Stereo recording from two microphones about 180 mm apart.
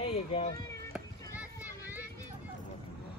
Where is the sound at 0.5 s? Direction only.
20° left (ahead or behind).